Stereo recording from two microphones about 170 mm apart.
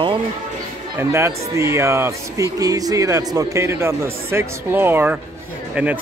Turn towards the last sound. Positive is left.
turn(degrees=-15)  # may be behind; listen again after turning